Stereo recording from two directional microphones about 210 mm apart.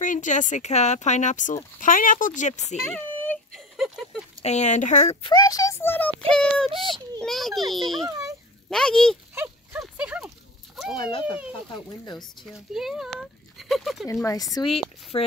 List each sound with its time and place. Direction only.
0.0 s speech: 35° left (ahead or behind)
2.8 s a sound: 5° left (ahead or behind)
4.4 s speech: 30° left (ahead or behind)
5.3 s a child's voice: 15° left (ahead or behind); by 8.0 s centre (ahead or behind)
8.0 s a sound: 15° right (ahead or behind)
8.6 s speech: 5° left (ahead or behind)
9.3 s dog: 10° right (ahead or behind)
11.0 s speech: 25° left (ahead or behind)
12.2 s speech: centre (ahead or behind)
14.2 s speech: 15° left (ahead or behind)